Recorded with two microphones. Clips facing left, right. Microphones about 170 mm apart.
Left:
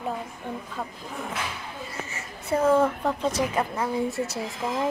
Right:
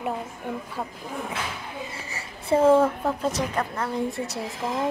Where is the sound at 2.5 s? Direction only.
25° right (ahead or behind).